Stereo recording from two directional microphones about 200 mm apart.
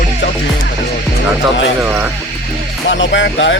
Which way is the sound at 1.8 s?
10° right (ahead or behind).